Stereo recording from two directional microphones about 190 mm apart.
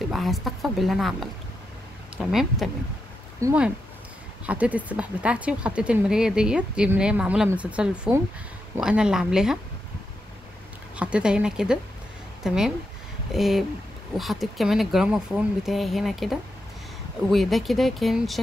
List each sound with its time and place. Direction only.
0.1 s speech: centre (ahead or behind)
3.4 s speech: 15° right (ahead or behind)
11.0 s speech: 5° right (ahead or behind)